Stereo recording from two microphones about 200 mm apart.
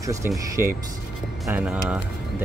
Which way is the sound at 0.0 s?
15° right (ahead or behind).